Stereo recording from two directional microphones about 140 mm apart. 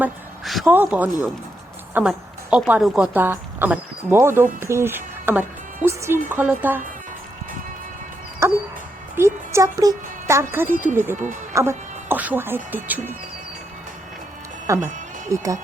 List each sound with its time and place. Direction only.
0.4 s speech: centre (ahead or behind)
0.7 s a woman's voice: 10° right (ahead or behind)
8.4 s dog: 20° right (ahead or behind)
9.1 s music: 20° right (ahead or behind)
10.9 s speech: 15° right (ahead or behind)
14.7 s speech: 20° right (ahead or behind)